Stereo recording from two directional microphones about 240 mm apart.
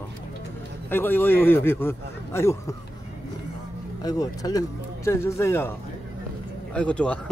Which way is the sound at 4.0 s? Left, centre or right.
Centre.